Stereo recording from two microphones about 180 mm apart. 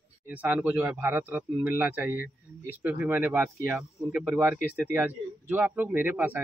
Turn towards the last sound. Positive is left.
turn(degrees=-10)  # may be behind; listen again after turning